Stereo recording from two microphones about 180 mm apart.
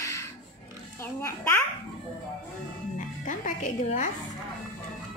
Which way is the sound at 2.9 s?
45° left (ahead or behind).